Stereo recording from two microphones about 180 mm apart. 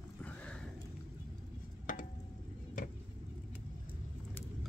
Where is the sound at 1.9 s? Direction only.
45° left (ahead or behind).